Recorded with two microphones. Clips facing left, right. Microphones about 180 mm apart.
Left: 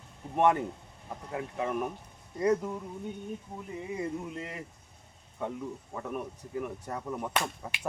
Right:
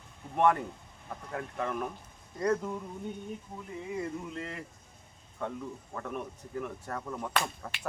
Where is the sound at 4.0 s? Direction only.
15° left (ahead or behind).